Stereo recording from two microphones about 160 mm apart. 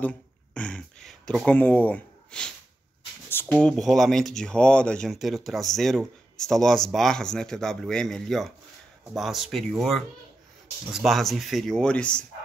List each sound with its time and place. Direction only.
0.6 s gasp: 5° left (ahead or behind)
3.3 s speech: 10° left (ahead or behind)